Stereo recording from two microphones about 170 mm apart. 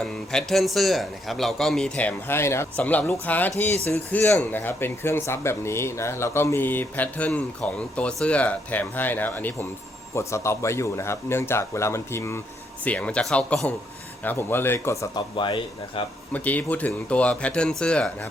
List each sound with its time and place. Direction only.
0.0 s a man's voice: 5° left (ahead or behind)
3.7 s speech: 40° right (ahead or behind)
3.9 s speech: 10° left (ahead or behind)
15.4 s speech: 30° left (ahead or behind)
16.3 s speech: 10° left (ahead or behind)